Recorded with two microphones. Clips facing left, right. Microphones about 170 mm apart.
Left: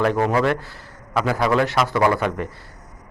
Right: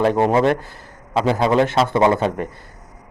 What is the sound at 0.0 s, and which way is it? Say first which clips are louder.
A man's voice: right 3 dB; 25° right (ahead or behind).